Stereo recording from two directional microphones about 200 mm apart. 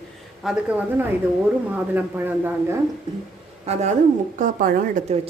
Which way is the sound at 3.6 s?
35° right (ahead or behind).